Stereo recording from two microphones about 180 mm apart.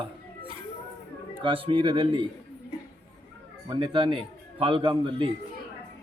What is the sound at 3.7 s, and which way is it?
A man's voice, 30° right (ahead or behind).